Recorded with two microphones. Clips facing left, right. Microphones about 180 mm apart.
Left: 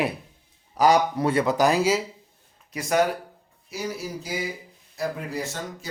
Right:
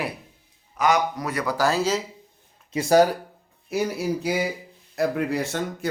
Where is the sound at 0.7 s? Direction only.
35° left (ahead or behind); by 2.0 s 10° left (ahead or behind).